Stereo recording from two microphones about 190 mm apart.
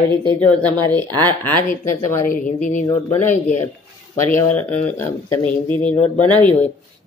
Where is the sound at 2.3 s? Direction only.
45° left (ahead or behind).